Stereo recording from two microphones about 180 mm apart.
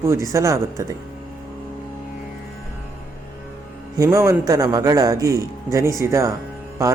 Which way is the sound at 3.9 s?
20° right (ahead or behind).